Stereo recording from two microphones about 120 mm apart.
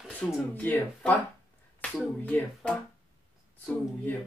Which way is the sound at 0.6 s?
15° left (ahead or behind).